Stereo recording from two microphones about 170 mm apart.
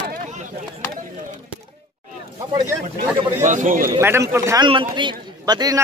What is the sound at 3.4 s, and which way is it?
Speech, 50° right (ahead or behind).